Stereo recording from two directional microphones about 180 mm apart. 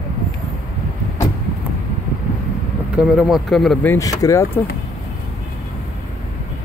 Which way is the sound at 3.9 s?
20° left (ahead or behind).